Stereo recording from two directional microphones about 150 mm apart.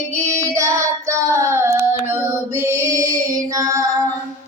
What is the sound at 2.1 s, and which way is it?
Music, 15° right (ahead or behind).